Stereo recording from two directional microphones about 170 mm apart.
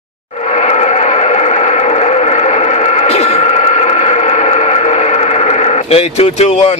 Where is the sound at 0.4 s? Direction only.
40° left (ahead or behind).